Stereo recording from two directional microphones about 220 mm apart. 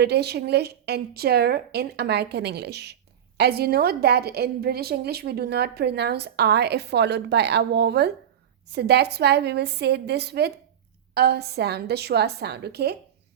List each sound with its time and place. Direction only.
0.0 s a woman's voice: 50° right (ahead or behind)